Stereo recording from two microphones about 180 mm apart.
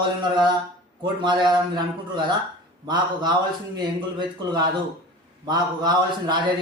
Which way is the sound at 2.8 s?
25° right (ahead or behind).